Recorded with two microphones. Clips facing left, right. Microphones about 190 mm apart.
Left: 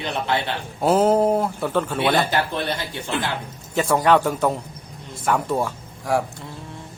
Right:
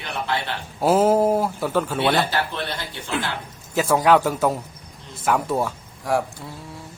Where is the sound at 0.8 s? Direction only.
Centre (ahead or behind).